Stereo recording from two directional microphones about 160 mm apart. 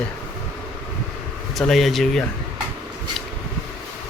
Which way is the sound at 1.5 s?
Centre (ahead or behind).